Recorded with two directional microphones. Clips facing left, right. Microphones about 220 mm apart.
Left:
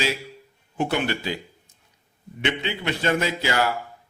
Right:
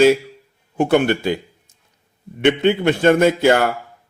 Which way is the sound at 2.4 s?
50° right (ahead or behind).